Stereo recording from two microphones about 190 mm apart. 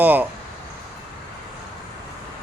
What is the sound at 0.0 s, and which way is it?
Speech, 10° right (ahead or behind).